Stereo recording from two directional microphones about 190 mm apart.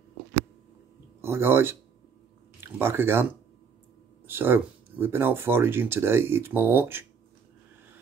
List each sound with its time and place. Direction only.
1.2 s speech: 10° right (ahead or behind)
4.3 s speech: 10° right (ahead or behind)